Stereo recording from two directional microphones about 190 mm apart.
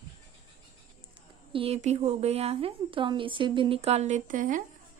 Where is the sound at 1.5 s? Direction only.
30° right (ahead or behind).